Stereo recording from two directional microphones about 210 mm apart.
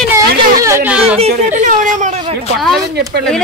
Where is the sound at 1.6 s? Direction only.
35° right (ahead or behind).